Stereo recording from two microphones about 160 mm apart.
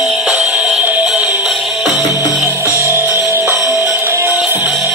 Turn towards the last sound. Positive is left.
turn(degrees=-10)  # may be behind; listen again after turning